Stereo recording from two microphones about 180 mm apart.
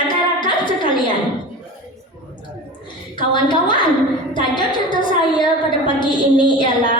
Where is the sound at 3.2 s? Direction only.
25° left (ahead or behind).